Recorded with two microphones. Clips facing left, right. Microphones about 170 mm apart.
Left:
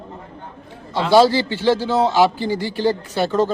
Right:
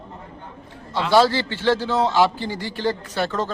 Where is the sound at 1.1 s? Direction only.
15° left (ahead or behind).